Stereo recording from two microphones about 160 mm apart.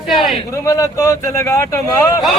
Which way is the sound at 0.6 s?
20° left (ahead or behind).